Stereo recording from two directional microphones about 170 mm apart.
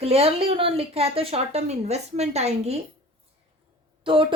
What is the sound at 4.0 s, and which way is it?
Speech, 30° right (ahead or behind).